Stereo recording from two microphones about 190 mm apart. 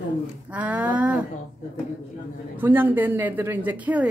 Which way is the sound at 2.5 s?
10° right (ahead or behind).